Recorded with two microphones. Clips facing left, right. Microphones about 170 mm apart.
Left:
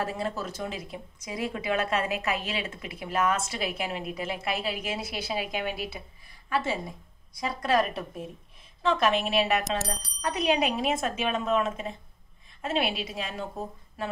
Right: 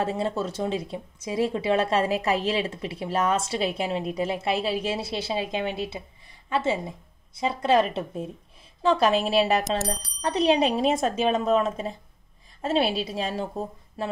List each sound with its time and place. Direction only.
0.0 s speech: 25° right (ahead or behind)
9.7 s speech: centre (ahead or behind)
10.2 s speech: 25° right (ahead or behind)